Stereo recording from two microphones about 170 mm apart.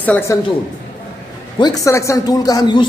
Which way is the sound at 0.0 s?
10° left (ahead or behind).